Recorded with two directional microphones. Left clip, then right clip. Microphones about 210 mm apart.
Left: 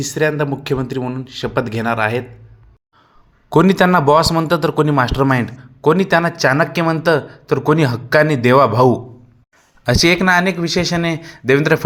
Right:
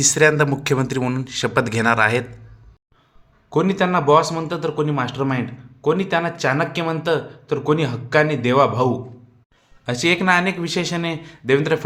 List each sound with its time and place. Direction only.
0.0 s speech: 5° left (ahead or behind)
3.5 s speech: 35° left (ahead or behind)